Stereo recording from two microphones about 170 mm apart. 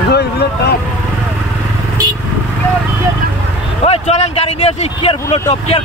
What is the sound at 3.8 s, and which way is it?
A man's voice, 40° left (ahead or behind).